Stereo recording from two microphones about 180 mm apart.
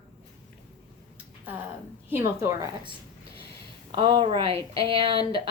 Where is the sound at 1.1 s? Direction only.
10° right (ahead or behind).